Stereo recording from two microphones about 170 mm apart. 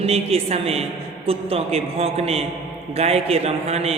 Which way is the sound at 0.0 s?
35° right (ahead or behind).